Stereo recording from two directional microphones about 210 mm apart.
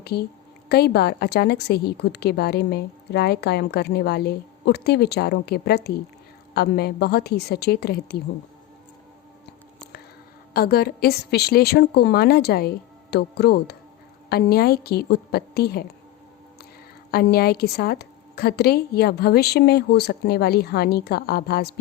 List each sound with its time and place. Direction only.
0.0 s a woman's voice: 50° left (ahead or behind)
10.5 s a woman's voice: 45° left (ahead or behind)
17.1 s a woman's voice: 45° left (ahead or behind)